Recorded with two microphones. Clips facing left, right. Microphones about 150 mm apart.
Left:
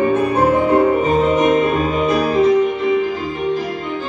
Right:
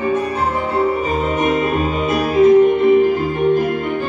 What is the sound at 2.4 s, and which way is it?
Music, 55° right (ahead or behind).